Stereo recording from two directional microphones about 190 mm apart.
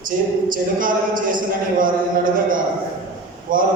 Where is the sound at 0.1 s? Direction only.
50° right (ahead or behind).